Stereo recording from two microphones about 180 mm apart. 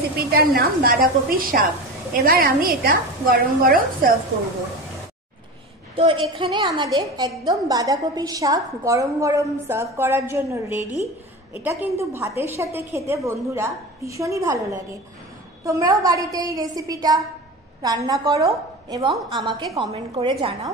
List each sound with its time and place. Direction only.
0.3 s a woman's voice: 55° right (ahead or behind)
5.9 s a woman's voice: 25° right (ahead or behind)